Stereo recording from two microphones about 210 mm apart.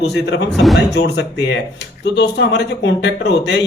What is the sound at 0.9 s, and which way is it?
Speech, 55° left (ahead or behind).